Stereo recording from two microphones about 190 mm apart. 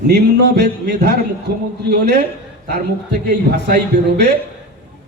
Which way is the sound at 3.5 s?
60° right (ahead or behind).